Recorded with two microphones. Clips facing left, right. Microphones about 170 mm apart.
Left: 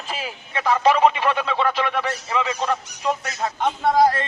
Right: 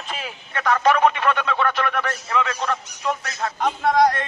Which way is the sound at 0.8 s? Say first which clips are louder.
Left 1 dB; 30° left (ahead or behind).